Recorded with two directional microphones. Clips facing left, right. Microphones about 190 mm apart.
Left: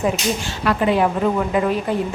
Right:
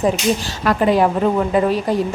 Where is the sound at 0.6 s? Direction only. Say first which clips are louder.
Right 3 dB; 40° right (ahead or behind).